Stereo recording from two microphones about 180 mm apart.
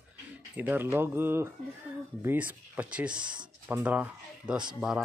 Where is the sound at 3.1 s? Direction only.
25° right (ahead or behind).